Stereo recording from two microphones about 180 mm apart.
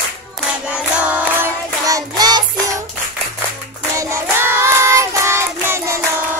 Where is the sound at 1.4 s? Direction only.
20° right (ahead or behind).